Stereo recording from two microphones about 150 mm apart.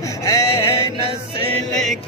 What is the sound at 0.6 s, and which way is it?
Music, 40° left (ahead or behind).